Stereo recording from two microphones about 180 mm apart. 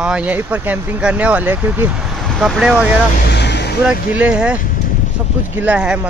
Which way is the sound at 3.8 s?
5° right (ahead or behind).